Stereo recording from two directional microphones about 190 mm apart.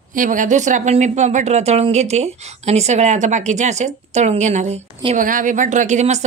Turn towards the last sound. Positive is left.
turn(degrees=-35)  # may be behind; listen again after turning